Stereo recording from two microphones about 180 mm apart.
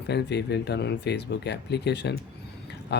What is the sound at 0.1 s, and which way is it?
Speech, 70° left (ahead or behind).